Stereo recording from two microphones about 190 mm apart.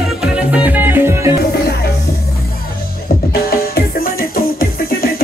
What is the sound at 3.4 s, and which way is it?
Music, 50° left (ahead or behind).